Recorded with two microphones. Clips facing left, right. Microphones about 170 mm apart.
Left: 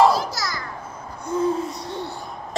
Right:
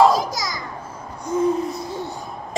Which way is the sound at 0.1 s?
15° right (ahead or behind).